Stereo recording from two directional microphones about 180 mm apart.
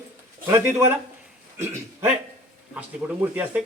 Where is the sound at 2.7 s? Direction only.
5° right (ahead or behind).